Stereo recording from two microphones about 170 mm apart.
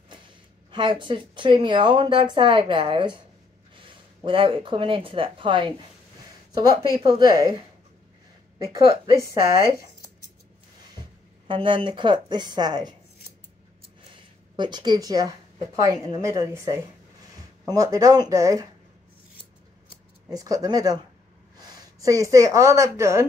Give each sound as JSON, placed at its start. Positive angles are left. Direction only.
{"t": 0.7, "sound": "speech", "side_deg": -30}
{"t": 8.7, "sound": "speech", "side_deg": -20}
{"t": 11.4, "sound": "speech", "side_deg": -30}
{"t": 14.1, "sound": "speech", "side_deg": -25}
{"t": 20.2, "sound": "speech", "side_deg": -20}